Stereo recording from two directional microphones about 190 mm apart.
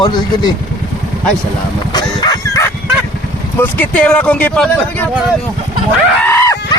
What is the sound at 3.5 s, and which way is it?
Speech, 10° left (ahead or behind).